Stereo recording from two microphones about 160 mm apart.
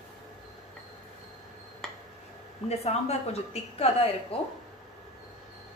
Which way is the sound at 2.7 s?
40° left (ahead or behind).